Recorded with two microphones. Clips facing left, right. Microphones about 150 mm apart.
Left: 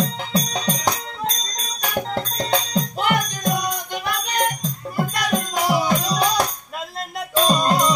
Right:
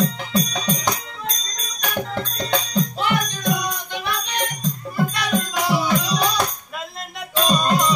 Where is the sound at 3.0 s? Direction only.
45° left (ahead or behind).